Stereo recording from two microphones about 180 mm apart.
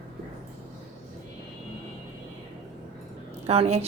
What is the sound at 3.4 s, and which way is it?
Speech, 35° right (ahead or behind).